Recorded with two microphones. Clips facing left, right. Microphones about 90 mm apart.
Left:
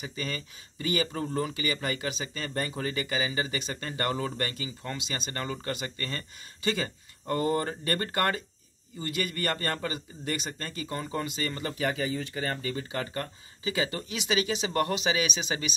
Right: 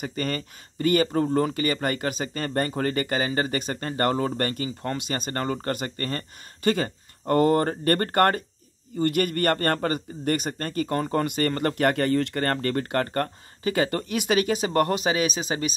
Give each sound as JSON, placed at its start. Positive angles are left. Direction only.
{"t": 0.0, "sound": "speech", "side_deg": -50}